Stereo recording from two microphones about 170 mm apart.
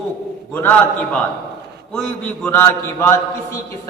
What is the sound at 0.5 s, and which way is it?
A man's voice, 10° left (ahead or behind).